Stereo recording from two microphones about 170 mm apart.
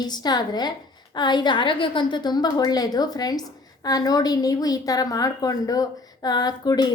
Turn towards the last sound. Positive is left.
turn(degrees=25)  # may be behind; listen again after turning